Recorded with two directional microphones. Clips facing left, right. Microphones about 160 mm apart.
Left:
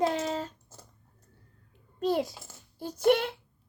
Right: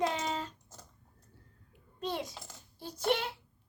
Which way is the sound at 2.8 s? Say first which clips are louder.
Left 8 dB; 50° left (ahead or behind).